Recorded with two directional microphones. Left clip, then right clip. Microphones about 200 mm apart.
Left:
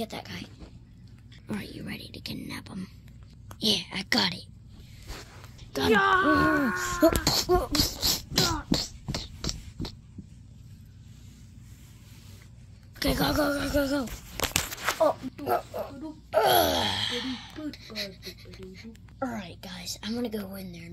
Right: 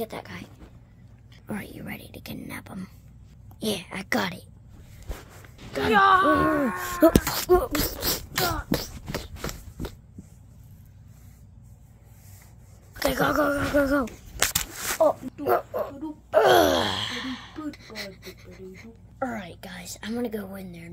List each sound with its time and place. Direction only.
0.0 s speech: 20° right (ahead or behind)
1.5 s speech: 15° right (ahead or behind)
5.9 s speech: 30° right (ahead or behind)
6.3 s speech: 10° right (ahead or behind)
6.7 s a sound: 35° right (ahead or behind)
13.0 s speech: 25° right (ahead or behind)
14.5 s a sound: 10° right (ahead or behind)
15.4 s speech: 30° right (ahead or behind); by 20.9 s 15° right (ahead or behind)